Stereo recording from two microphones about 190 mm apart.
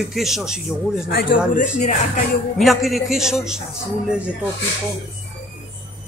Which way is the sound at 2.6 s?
Centre (ahead or behind).